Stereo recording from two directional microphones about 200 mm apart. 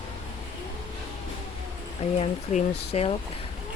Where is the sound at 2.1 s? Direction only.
35° left (ahead or behind).